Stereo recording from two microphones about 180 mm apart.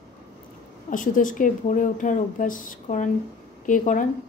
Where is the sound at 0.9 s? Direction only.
45° left (ahead or behind).